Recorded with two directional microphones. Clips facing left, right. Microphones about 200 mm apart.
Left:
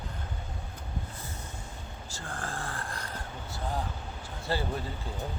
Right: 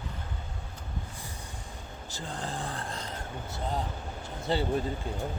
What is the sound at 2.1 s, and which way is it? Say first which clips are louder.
Speech: right 2 dB; 20° right (ahead or behind).